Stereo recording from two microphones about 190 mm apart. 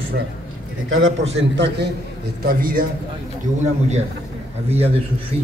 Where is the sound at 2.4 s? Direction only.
50° right (ahead or behind).